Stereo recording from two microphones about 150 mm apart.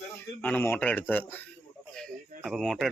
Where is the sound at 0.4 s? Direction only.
15° left (ahead or behind).